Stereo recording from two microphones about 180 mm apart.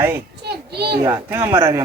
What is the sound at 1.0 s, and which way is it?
Speech, 15° right (ahead or behind).